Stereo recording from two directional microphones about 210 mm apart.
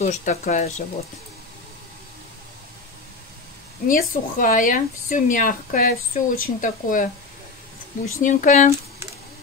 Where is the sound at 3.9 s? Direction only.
40° left (ahead or behind).